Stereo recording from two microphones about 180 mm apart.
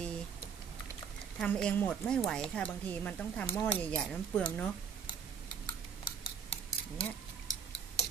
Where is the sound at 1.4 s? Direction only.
5° left (ahead or behind).